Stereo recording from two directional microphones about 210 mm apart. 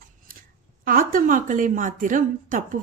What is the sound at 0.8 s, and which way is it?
A woman's voice, 40° right (ahead or behind).